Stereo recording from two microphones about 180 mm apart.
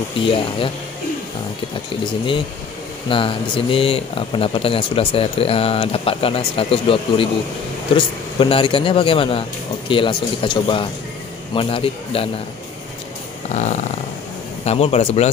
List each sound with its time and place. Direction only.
3.1 s speech: 30° left (ahead or behind)
13.5 s a sound: 40° left (ahead or behind)
14.6 s speech: 35° left (ahead or behind)